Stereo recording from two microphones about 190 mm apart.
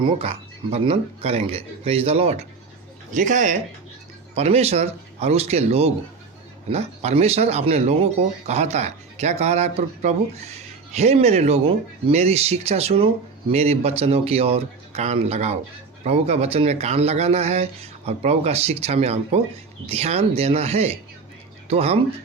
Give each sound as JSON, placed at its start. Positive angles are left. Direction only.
{"t": 0.0, "sound": "speech", "side_deg": -30}